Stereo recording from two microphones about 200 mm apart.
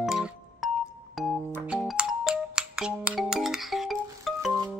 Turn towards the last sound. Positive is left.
turn(degrees=0)  # may be behind; listen again after turning